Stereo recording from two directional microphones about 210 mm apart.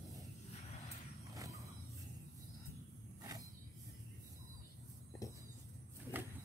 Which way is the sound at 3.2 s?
15° right (ahead or behind).